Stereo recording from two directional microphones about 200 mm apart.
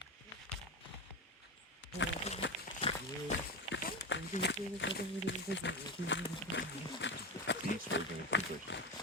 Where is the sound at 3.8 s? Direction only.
50° left (ahead or behind).